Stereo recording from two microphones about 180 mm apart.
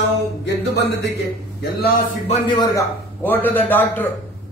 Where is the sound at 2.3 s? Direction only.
30° left (ahead or behind).